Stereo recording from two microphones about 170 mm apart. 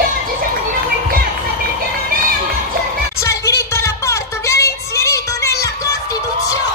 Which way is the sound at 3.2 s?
15° left (ahead or behind).